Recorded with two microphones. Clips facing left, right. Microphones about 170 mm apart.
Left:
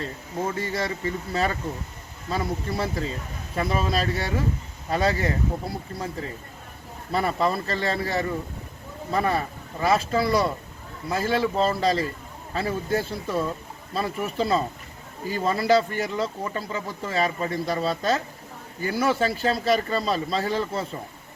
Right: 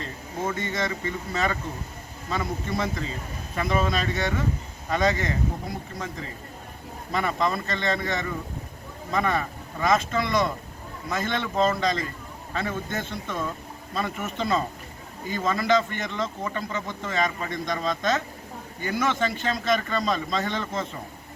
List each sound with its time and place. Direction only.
0.6 s speech: 35° left (ahead or behind)